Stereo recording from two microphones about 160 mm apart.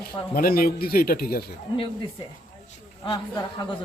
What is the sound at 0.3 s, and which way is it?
A man's voice, 70° left (ahead or behind).